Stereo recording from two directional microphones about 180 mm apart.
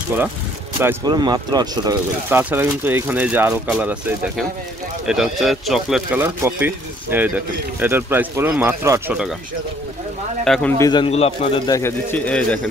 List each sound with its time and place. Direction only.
0.7 s speech: 15° right (ahead or behind)
2.2 s speech: 10° right (ahead or behind)
10.4 s a man's voice: centre (ahead or behind)
10.8 s speech: 25° left (ahead or behind); by 12.5 s 5° left (ahead or behind)